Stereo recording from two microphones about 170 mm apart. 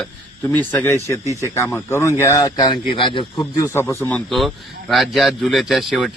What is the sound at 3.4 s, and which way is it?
Speech, 15° left (ahead or behind).